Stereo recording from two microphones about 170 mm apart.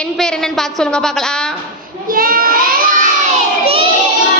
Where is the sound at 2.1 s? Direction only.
60° right (ahead or behind).